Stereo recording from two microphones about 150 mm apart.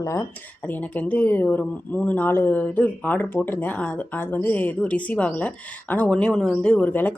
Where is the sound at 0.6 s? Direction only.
10° left (ahead or behind).